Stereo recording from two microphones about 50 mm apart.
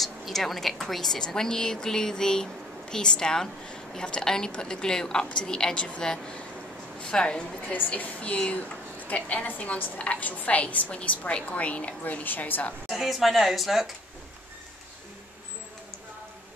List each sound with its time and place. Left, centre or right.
0.0 s a woman's voice: centre
7.0 s a woman's voice: centre; by 12.7 s left
12.9 s speech: centre